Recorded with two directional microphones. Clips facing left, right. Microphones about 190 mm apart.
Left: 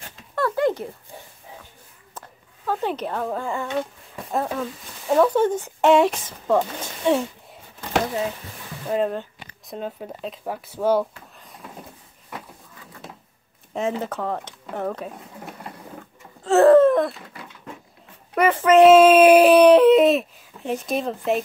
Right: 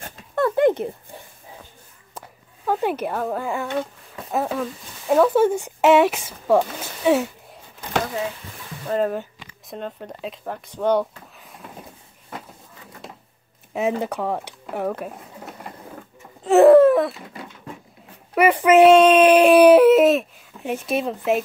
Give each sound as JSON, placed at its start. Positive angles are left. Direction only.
{"t": 0.4, "sound": "a sound", "side_deg": -20}
{"t": 2.1, "sound": "a sound", "side_deg": -15}
{"t": 4.3, "sound": "speech", "side_deg": -5}
{"t": 8.9, "sound": "speech", "side_deg": 0}
{"t": 13.7, "sound": "speech", "side_deg": -10}
{"t": 16.4, "sound": "wail", "side_deg": -15}
{"t": 18.3, "sound": "speech", "side_deg": -10}
{"t": 18.8, "sound": "speech", "side_deg": 0}